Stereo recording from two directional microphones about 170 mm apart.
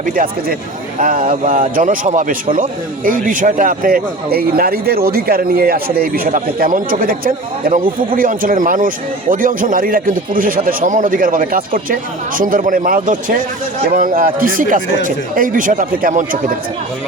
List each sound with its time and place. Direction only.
0.0 s a man's voice: 55° right (ahead or behind)